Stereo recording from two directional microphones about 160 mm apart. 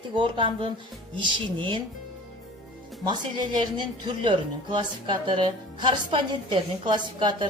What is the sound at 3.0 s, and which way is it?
Speech, 25° right (ahead or behind).